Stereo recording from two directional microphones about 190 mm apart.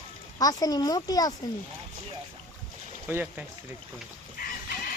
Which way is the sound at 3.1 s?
10° right (ahead or behind).